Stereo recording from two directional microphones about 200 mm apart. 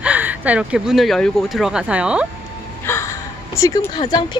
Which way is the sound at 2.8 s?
15° left (ahead or behind).